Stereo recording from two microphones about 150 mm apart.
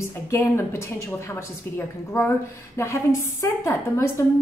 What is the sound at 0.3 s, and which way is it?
A woman's voice, 20° left (ahead or behind).